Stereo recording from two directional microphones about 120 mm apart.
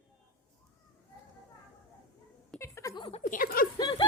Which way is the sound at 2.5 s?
25° left (ahead or behind).